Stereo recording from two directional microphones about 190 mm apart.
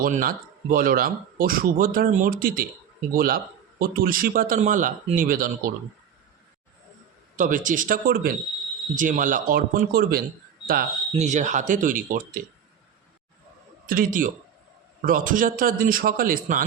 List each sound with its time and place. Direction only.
0.0 s speech: 45° right (ahead or behind)
7.3 s speech: 45° right (ahead or behind)
11.1 s speech: 35° right (ahead or behind)
13.8 s speech: 45° right (ahead or behind)